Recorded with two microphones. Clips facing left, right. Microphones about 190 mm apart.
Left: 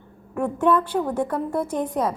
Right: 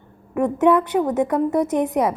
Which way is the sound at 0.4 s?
20° right (ahead or behind).